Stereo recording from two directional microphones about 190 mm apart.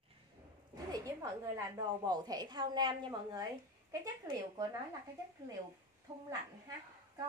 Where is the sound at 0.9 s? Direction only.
15° right (ahead or behind).